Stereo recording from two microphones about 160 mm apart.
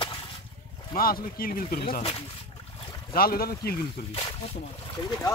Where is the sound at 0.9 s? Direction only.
65° left (ahead or behind).